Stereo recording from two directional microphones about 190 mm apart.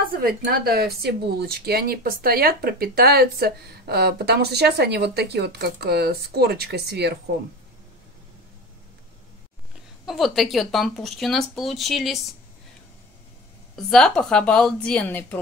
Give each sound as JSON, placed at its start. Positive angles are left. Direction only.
{"t": 0.0, "sound": "a woman's voice", "side_deg": -50}
{"t": 10.0, "sound": "speech", "side_deg": 0}
{"t": 13.8, "sound": "speech", "side_deg": 5}